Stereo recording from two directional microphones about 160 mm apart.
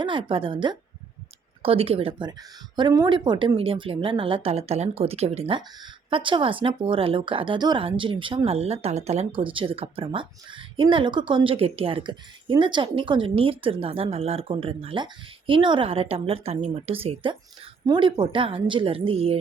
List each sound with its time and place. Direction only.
0.0 s speech: 30° right (ahead or behind)